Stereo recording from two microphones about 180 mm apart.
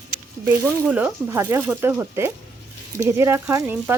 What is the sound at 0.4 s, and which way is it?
Speech, 10° right (ahead or behind).